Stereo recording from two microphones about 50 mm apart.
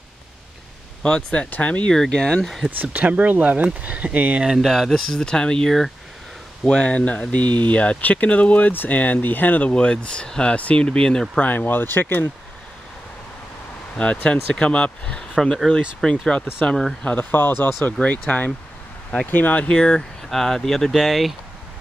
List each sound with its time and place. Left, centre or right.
1.0 s speech: left
1.9 s speech: centre
2.8 s speech: right
4.6 s speech: centre; by 9.7 s left
9.7 s speech: left
11.3 s speech: left
13.9 s speech: left; by 16.9 s centre
17.0 s speech: left
17.3 s speech: left
19.3 s speech: left
19.7 s speech: centre